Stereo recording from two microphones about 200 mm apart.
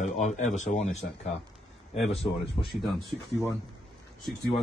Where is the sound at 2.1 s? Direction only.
30° left (ahead or behind).